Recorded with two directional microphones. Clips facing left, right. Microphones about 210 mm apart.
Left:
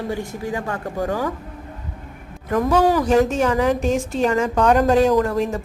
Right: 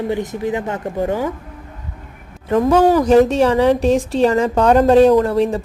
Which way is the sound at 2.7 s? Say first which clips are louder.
Right 5 dB; 45° right (ahead or behind).